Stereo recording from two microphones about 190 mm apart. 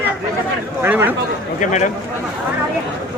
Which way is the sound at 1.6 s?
40° left (ahead or behind).